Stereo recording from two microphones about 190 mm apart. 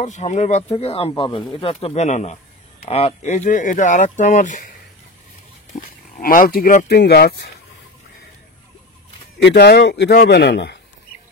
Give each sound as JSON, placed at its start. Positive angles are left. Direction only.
{"t": 0.0, "sound": "speech", "side_deg": 40}
{"t": 5.8, "sound": "speech", "side_deg": 50}
{"t": 9.4, "sound": "a man's voice", "side_deg": 60}